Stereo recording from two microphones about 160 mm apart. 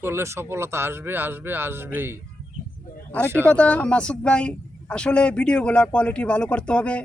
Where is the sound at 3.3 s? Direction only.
15° right (ahead or behind).